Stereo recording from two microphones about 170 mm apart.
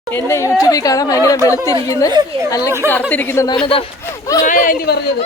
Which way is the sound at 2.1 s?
25° right (ahead or behind).